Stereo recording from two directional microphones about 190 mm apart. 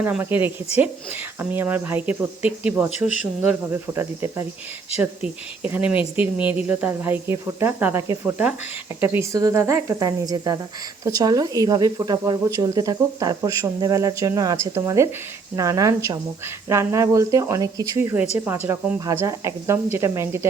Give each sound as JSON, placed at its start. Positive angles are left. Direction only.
{"t": 0.0, "sound": "speech", "side_deg": -10}